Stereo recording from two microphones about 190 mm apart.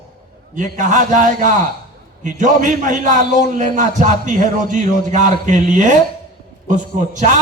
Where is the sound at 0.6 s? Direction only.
40° right (ahead or behind).